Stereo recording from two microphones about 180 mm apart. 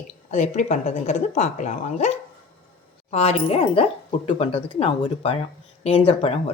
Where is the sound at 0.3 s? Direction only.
40° left (ahead or behind).